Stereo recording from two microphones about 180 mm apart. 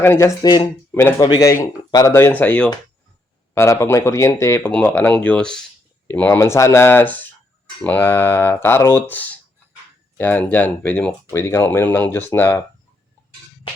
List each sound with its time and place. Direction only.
0.0 s speech: 15° left (ahead or behind)